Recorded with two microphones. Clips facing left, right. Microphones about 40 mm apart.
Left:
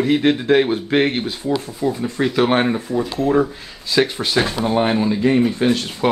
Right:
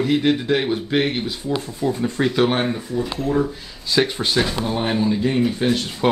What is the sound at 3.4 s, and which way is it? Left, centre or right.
Speech, centre.